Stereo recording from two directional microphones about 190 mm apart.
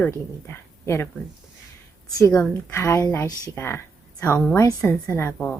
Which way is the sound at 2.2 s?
20° left (ahead or behind).